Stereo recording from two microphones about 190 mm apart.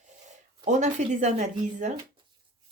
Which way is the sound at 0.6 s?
40° right (ahead or behind).